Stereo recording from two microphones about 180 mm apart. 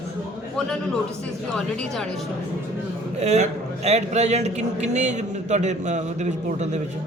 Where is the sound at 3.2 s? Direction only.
35° right (ahead or behind).